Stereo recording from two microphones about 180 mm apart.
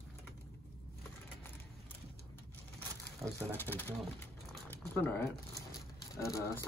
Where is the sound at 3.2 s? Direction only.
Centre (ahead or behind).